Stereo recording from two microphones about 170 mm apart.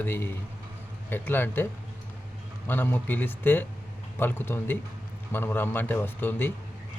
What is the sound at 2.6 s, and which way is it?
Speech, 10° left (ahead or behind).